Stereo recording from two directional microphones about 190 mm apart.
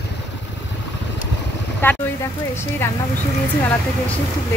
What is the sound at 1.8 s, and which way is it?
Speech, 10° left (ahead or behind).